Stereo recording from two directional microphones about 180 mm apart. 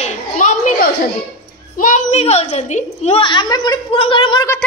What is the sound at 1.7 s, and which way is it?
A woman's voice, 45° left (ahead or behind).